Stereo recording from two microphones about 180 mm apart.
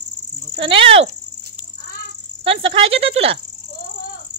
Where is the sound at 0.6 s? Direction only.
30° right (ahead or behind).